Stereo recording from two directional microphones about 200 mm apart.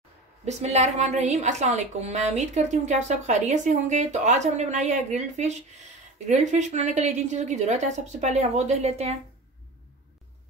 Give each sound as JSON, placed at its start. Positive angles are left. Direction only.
{"t": 0.5, "sound": "a woman's voice", "side_deg": -35}